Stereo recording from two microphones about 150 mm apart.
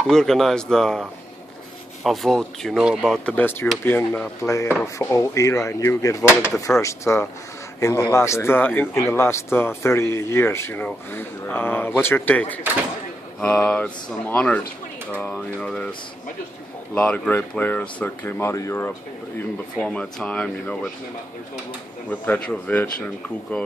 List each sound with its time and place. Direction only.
0.0 s speech: 5° left (ahead or behind)
2.0 s a man's voice: 5° left (ahead or behind); by 6.2 s 20° left (ahead or behind)
6.2 s speech: 5° right (ahead or behind)
6.8 s a man's voice: 20° left (ahead or behind)
16.9 s a man's voice: 5° left (ahead or behind)
22.2 s a man's voice: 10° left (ahead or behind)